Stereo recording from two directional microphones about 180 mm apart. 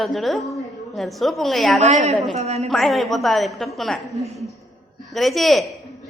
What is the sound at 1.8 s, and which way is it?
Speech, 40° right (ahead or behind).